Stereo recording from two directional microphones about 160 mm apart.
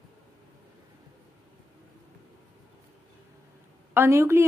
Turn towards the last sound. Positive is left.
turn(degrees=-15)  # may be behind; listen again after turning